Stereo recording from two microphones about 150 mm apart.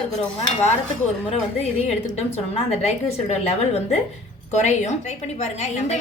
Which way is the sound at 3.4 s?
45° left (ahead or behind).